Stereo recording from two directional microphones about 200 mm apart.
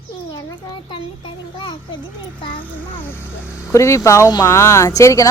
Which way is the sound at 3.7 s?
15° left (ahead or behind).